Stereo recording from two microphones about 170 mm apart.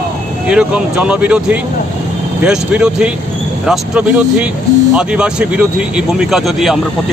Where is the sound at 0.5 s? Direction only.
5° right (ahead or behind).